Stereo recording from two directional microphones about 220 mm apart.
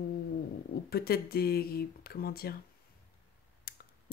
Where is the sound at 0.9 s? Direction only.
45° left (ahead or behind).